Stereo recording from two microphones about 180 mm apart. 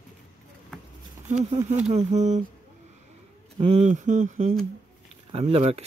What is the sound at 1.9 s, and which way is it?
Speech, 40° right (ahead or behind).